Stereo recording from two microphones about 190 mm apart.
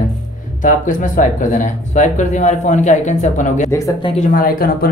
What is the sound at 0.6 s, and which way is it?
Speech, 45° left (ahead or behind).